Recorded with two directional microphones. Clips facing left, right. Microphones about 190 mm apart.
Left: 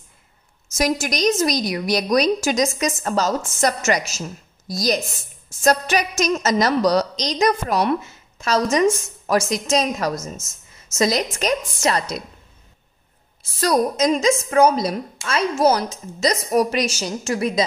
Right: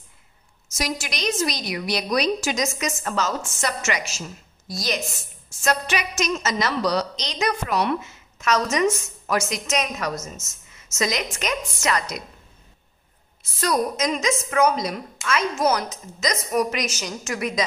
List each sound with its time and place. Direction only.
0.7 s a woman's voice: 45° left (ahead or behind)
13.6 s a woman's voice: 35° left (ahead or behind)